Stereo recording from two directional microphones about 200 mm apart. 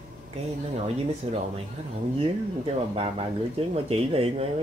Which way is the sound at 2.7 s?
30° right (ahead or behind).